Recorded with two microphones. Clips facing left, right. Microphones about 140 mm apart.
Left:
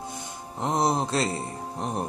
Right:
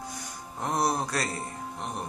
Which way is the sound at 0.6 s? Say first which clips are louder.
Left 3 dB; 20° left (ahead or behind).